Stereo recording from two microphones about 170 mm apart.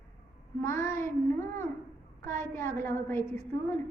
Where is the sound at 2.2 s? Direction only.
15° left (ahead or behind).